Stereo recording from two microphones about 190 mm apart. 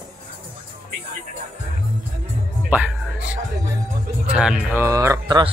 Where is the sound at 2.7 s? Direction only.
5° right (ahead or behind).